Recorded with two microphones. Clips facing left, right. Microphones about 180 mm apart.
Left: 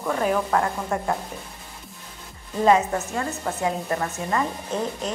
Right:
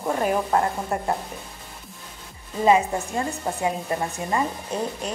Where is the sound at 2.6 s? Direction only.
15° right (ahead or behind).